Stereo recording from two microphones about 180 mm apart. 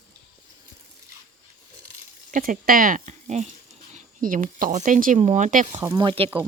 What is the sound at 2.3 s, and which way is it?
Speech, 50° right (ahead or behind).